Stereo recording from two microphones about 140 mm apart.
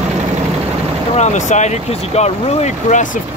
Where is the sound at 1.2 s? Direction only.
55° left (ahead or behind).